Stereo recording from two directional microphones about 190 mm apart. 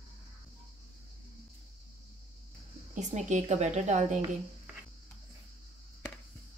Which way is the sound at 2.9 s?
40° right (ahead or behind).